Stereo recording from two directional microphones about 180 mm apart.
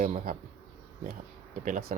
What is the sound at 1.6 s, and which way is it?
Speech, 50° right (ahead or behind).